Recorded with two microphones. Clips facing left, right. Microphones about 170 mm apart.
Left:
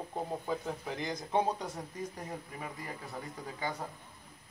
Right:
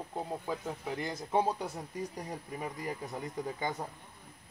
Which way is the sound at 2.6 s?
20° right (ahead or behind).